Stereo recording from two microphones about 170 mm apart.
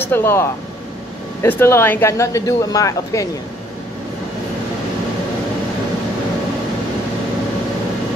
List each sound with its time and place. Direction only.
0.0 s speech: 15° left (ahead or behind)